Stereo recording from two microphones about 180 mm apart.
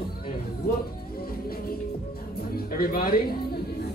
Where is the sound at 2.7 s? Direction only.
55° left (ahead or behind).